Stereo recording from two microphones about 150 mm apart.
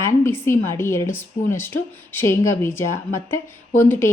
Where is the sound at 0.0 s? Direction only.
15° left (ahead or behind).